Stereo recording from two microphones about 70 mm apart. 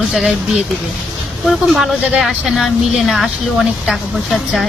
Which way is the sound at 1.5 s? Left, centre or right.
Centre.